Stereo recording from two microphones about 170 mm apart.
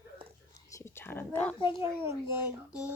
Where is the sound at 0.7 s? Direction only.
15° left (ahead or behind).